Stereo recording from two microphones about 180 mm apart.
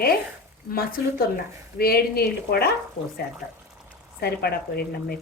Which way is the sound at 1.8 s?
60° left (ahead or behind).